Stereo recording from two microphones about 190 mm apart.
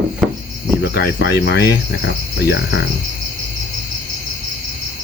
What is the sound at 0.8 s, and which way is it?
Speech, 60° left (ahead or behind).